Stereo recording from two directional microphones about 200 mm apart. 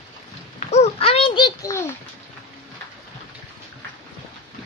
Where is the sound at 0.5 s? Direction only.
35° left (ahead or behind); by 1.8 s 15° left (ahead or behind).